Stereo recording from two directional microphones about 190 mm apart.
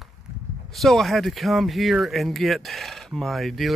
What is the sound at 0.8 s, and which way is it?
Speech, centre (ahead or behind).